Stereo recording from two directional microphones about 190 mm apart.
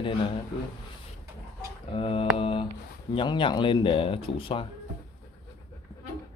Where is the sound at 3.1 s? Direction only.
25° left (ahead or behind).